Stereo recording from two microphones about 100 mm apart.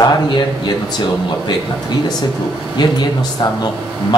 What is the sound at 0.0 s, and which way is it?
Speech, 45° left (ahead or behind).